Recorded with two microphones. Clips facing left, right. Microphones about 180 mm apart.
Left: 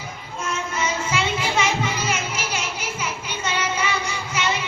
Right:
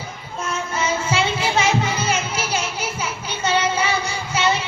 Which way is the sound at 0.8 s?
30° right (ahead or behind).